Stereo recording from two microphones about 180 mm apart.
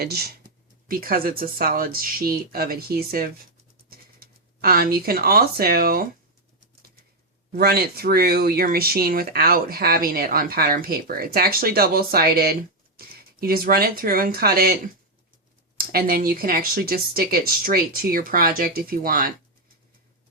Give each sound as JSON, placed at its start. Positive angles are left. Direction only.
{"t": 0.0, "sound": "speech", "side_deg": -60}
{"t": 7.5, "sound": "speech", "side_deg": -60}
{"t": 15.8, "sound": "speech", "side_deg": -55}